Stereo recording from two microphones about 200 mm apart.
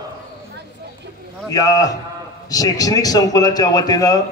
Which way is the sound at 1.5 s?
15° left (ahead or behind).